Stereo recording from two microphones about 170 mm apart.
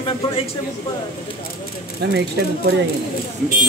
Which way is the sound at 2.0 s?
80° right.